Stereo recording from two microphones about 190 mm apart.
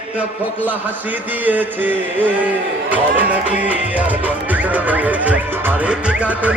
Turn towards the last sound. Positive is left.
turn(degrees=-5)  # may be behind; listen again after turning